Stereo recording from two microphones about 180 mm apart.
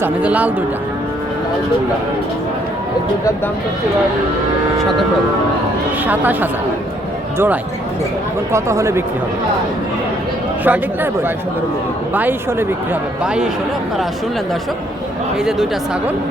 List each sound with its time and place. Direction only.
0.0 s a man's voice: 10° right (ahead or behind)
6.1 s a man's voice: 10° right (ahead or behind)
10.6 s a man's voice: 10° right (ahead or behind)